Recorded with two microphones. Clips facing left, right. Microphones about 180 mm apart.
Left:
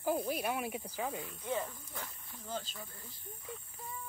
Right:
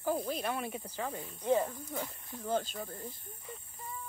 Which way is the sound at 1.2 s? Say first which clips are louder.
Right 7 dB; 40° right (ahead or behind).